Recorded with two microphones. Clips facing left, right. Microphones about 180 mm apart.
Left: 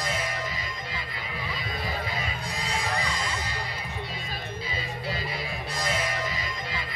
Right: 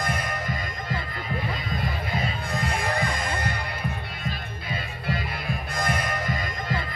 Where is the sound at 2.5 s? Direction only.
55° right (ahead or behind).